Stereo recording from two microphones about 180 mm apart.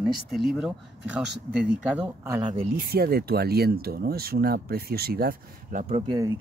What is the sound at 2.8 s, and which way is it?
Speech, 60° right (ahead or behind).